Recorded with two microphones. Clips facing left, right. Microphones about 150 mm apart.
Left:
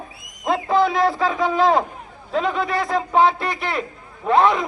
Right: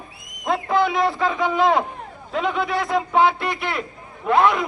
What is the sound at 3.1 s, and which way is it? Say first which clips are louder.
Speech: left 2 dB; 35° left (ahead or behind).